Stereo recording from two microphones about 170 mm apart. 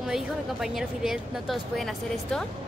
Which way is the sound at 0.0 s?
Centre (ahead or behind).